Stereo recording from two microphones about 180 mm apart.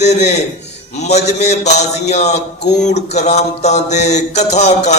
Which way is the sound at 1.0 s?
40° left (ahead or behind).